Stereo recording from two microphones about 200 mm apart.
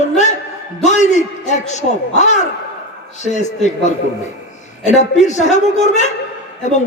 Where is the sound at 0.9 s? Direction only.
35° left (ahead or behind).